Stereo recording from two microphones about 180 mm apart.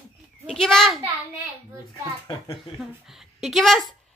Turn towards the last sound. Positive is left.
turn(degrees=0)  # may be behind; listen again after turning